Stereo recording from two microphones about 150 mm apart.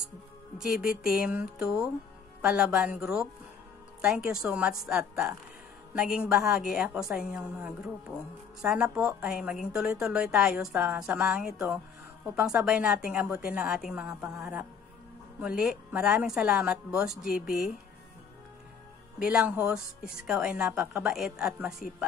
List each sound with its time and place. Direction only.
0.6 s a woman's voice: 5° right (ahead or behind)
15.4 s a woman's voice: 5° right (ahead or behind)
19.1 s a woman's voice: 5° right (ahead or behind)